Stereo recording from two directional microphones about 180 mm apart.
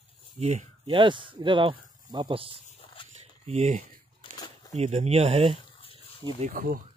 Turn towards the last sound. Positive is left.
turn(degrees=-50)  # may be behind; listen again after turning